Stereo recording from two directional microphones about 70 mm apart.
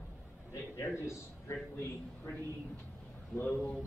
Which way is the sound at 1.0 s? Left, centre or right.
Left.